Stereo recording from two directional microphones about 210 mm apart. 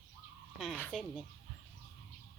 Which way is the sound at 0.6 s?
Centre (ahead or behind).